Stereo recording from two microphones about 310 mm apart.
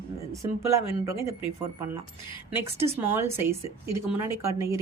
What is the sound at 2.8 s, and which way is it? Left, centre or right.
Speech, centre.